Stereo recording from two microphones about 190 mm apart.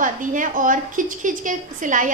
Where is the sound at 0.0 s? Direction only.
45° right (ahead or behind).